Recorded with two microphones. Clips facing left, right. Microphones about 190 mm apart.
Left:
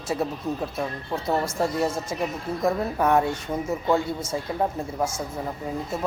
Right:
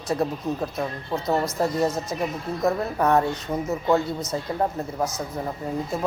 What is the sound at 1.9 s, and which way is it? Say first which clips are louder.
Speech: right 1 dB; 30° left (ahead or behind).